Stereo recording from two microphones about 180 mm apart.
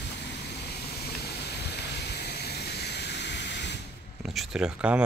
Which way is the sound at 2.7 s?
70° left (ahead or behind).